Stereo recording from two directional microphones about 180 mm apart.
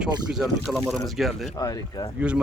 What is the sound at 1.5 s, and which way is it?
Speech, 20° left (ahead or behind).